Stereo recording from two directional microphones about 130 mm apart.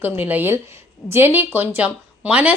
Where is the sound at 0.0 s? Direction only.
15° right (ahead or behind).